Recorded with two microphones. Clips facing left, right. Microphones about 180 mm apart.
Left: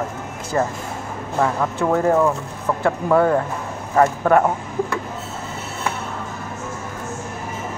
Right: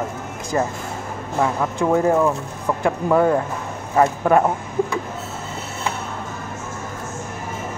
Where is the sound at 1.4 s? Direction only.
15° right (ahead or behind).